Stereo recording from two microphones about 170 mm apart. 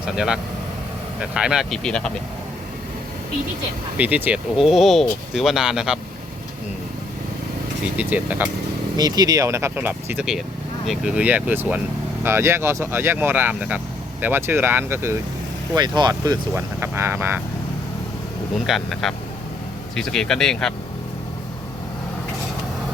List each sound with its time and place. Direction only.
1.2 s speech: 5° right (ahead or behind)
3.9 s speech: 10° right (ahead or behind)
7.9 s speech: 10° right (ahead or behind)
9.0 s speech: 20° right (ahead or behind)
15.7 s speech: 25° right (ahead or behind)
18.6 s speech: centre (ahead or behind)